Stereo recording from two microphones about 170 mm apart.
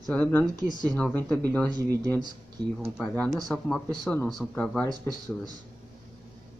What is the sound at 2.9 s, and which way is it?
Speech, 10° left (ahead or behind).